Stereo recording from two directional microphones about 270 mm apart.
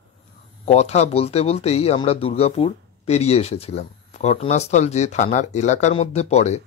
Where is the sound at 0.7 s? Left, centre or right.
Left.